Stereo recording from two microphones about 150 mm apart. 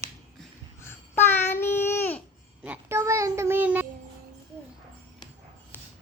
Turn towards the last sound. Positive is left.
turn(degrees=15)  # may be behind; listen again after turning